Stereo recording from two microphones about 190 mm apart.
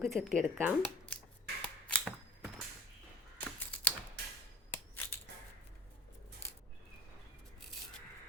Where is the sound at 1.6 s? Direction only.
5° left (ahead or behind).